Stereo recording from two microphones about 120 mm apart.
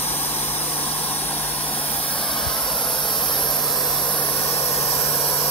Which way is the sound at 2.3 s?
5° left (ahead or behind).